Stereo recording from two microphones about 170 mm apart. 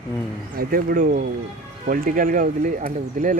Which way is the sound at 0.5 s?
60° right (ahead or behind).